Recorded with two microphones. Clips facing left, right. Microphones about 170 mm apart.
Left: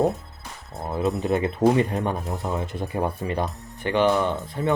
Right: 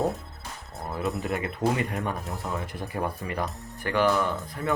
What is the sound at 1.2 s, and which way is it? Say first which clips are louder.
Speech: left 10 dB; 25° left (ahead or behind).